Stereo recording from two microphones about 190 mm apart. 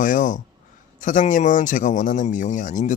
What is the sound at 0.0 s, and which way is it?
A man's voice, 45° left (ahead or behind).